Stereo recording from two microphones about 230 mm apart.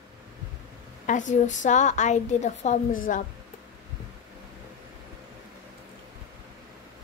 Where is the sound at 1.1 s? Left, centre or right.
Left.